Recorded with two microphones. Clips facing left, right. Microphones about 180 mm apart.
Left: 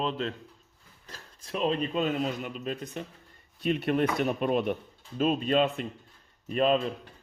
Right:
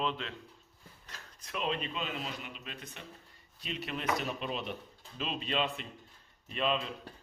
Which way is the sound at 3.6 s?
55° left (ahead or behind).